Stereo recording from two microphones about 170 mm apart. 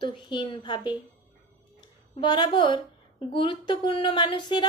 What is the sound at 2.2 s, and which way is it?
A woman's voice, 25° left (ahead or behind).